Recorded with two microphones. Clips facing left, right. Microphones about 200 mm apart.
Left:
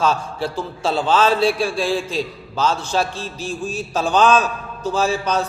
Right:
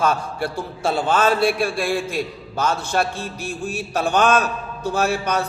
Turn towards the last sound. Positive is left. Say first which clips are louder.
# left 1 dB
turn(degrees=-60)  # may be behind; listen again after turning